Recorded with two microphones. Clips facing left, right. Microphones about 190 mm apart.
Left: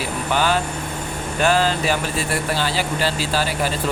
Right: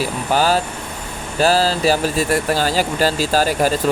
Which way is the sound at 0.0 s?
40° right (ahead or behind).